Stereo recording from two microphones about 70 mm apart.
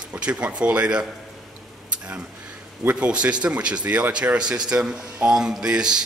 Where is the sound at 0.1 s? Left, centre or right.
Centre.